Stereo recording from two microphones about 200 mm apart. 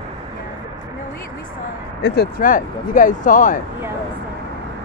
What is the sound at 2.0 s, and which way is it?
Speech, 55° left (ahead or behind).